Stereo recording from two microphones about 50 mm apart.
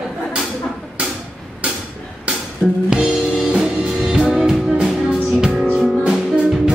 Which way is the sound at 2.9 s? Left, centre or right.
Centre.